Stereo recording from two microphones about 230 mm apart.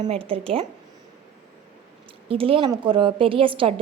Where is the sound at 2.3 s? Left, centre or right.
Right.